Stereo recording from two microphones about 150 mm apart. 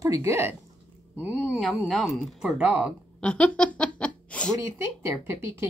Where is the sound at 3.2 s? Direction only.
10° left (ahead or behind).